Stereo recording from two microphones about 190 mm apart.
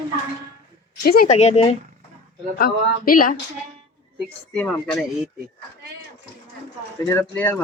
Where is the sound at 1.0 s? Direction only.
55° left (ahead or behind).